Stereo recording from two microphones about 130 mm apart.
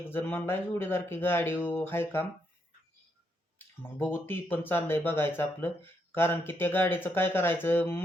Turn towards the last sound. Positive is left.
turn(degrees=15)  # may be behind; listen again after turning